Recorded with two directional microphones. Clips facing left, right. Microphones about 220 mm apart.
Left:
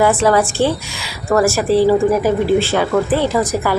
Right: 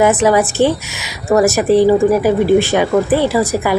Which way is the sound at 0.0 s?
20° right (ahead or behind).